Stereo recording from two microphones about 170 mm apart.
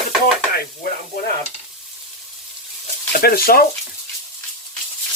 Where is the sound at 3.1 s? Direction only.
60° left (ahead or behind).